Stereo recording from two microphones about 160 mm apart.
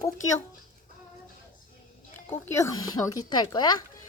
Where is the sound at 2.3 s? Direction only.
15° left (ahead or behind).